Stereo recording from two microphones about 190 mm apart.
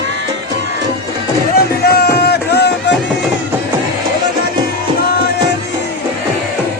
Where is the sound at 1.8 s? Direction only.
55° left (ahead or behind).